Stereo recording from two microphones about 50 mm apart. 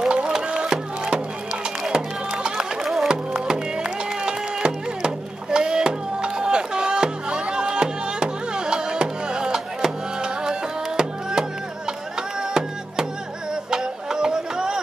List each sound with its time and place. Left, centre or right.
0.0 s music: centre